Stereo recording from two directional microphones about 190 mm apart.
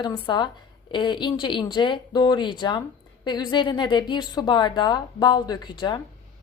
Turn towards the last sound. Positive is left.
turn(degrees=25)  # may be behind; listen again after turning